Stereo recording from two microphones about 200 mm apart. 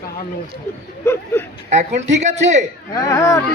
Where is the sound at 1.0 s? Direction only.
10° left (ahead or behind).